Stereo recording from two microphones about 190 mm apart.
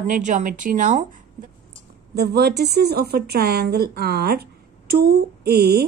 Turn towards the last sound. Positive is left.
turn(degrees=-60)  # may be behind; listen again after turning